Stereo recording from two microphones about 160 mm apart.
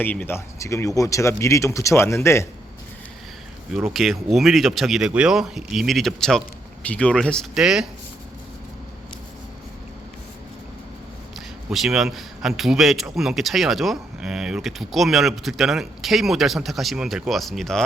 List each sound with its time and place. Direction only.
0.0 s speech: 10° left (ahead or behind)
3.8 s a man's voice: centre (ahead or behind)
11.3 s a man's voice: centre (ahead or behind)